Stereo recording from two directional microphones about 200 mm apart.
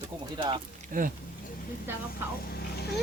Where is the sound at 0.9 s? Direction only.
45° right (ahead or behind).